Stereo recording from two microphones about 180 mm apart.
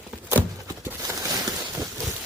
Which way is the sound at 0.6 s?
15° right (ahead or behind).